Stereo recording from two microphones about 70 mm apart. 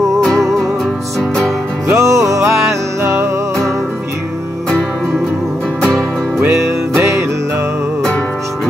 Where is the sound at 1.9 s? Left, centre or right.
Right.